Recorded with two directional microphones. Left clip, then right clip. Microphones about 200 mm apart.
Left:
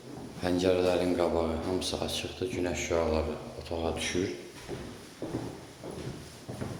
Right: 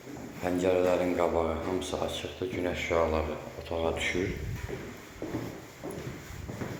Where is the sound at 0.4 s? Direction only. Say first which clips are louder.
Even; 35° left (ahead or behind); by 4.1 s 15° left (ahead or behind).